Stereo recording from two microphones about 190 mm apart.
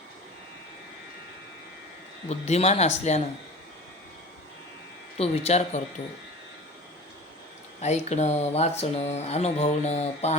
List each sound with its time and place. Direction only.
2.4 s speech: 35° left (ahead or behind)
5.1 s speech: 30° left (ahead or behind)
7.8 s speech: 35° left (ahead or behind)